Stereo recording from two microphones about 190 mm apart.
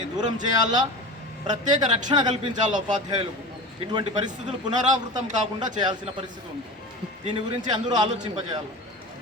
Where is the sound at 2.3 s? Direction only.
40° right (ahead or behind).